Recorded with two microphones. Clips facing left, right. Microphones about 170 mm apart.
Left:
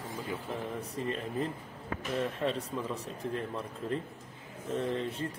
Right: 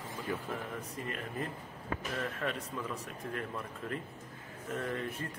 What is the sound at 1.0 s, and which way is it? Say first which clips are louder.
Speech: left 6 dB; 30° left (ahead or behind).